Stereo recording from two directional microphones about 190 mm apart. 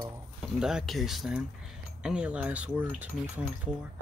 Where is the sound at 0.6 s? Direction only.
5° right (ahead or behind).